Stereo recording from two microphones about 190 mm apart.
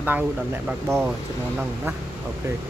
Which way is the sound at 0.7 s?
10° right (ahead or behind).